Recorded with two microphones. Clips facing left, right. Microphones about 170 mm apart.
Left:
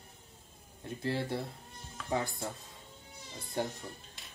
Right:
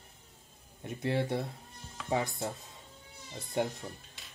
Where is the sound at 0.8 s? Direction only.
20° right (ahead or behind).